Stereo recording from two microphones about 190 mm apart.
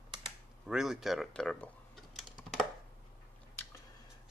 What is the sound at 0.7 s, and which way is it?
Speech, centre (ahead or behind).